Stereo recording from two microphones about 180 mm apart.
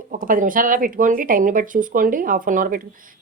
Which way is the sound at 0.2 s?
50° right (ahead or behind).